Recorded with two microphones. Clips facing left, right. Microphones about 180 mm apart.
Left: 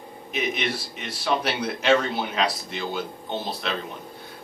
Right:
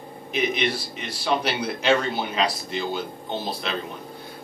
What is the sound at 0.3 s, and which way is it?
Speech, centre (ahead or behind).